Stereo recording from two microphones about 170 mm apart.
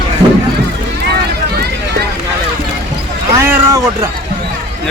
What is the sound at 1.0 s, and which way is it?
Run, 70° right (ahead or behind).